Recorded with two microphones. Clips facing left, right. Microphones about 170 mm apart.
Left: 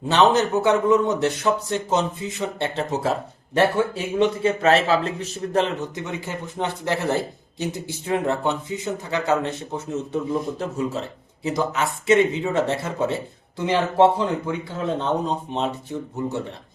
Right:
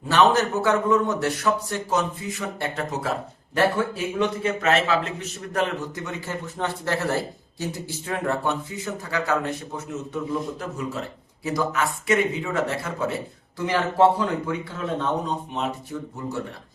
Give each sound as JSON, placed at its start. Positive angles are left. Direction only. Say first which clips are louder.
{"t": 0.1, "sound": "a man's voice", "louder": "left 2 dB", "side_deg": 20}
{"t": 5.5, "sound": "a man's voice", "louder": "left 3 dB", "side_deg": 20}